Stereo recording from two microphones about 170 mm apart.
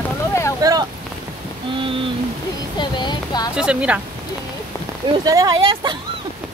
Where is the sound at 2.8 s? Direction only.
25° left (ahead or behind).